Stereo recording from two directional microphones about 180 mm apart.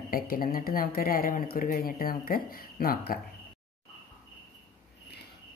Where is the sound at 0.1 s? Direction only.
55° left (ahead or behind).